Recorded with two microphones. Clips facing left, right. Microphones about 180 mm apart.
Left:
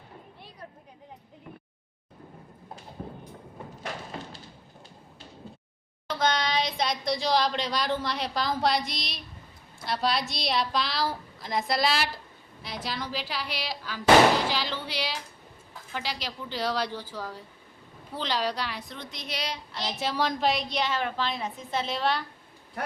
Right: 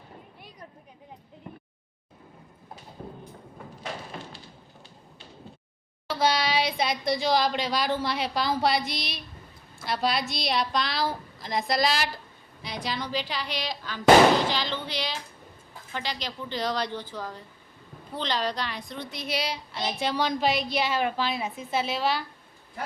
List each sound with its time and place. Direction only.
6.1 s a woman's voice: 10° right (ahead or behind)